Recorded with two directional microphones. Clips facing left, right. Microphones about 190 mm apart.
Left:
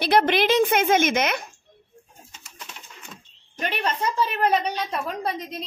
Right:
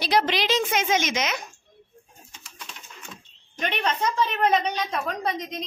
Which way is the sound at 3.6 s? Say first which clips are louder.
Even; 5° left (ahead or behind).